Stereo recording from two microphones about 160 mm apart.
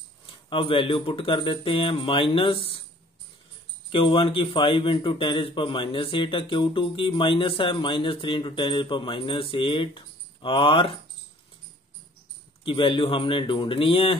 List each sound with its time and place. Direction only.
0.5 s a man's voice: 30° left (ahead or behind)
3.9 s a man's voice: 35° left (ahead or behind)
12.6 s a man's voice: 30° left (ahead or behind)